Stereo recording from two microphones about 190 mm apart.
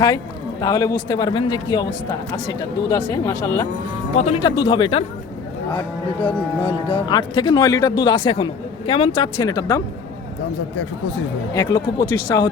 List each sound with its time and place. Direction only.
0.6 s speech: 15° left (ahead or behind)
4.1 s speech: 35° left (ahead or behind)
6.1 s speech: 10° left (ahead or behind)
6.7 s speech: 30° left (ahead or behind)
11.5 s speech: 20° left (ahead or behind)